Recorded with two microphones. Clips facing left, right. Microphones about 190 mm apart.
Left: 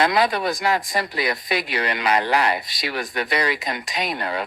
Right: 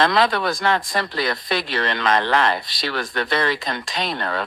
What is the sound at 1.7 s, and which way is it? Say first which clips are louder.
Speech: right 1 dB; 15° left (ahead or behind).